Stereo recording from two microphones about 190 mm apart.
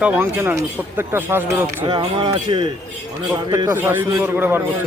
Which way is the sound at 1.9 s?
25° right (ahead or behind).